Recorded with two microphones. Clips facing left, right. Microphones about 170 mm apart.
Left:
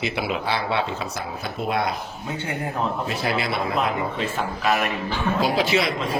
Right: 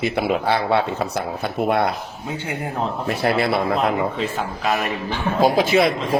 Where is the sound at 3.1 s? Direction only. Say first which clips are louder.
Right 5 dB; 60° right (ahead or behind).